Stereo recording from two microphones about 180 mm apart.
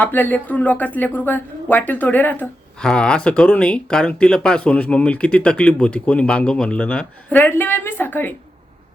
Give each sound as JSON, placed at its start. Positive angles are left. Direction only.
{"t": 0.0, "sound": "speech", "side_deg": 10}